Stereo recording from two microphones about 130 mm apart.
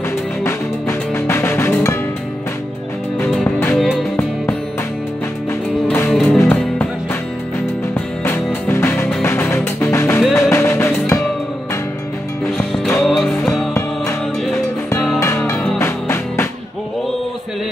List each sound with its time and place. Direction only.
0.4 s music: 20° left (ahead or behind)
3.3 s music: 5° left (ahead or behind)
6.0 s music: centre (ahead or behind)
8.6 s music: 20° left (ahead or behind)
12.5 s music: 5° left (ahead or behind)
15.1 s music: 20° left (ahead or behind)